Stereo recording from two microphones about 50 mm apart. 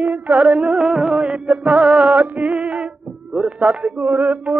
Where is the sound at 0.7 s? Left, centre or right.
Centre; by 4.5 s right.